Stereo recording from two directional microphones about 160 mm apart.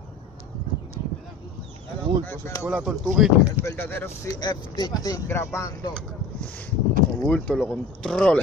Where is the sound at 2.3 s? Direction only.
15° left (ahead or behind).